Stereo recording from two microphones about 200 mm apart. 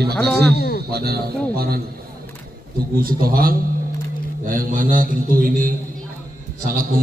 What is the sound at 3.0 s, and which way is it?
A man's voice, 45° right (ahead or behind).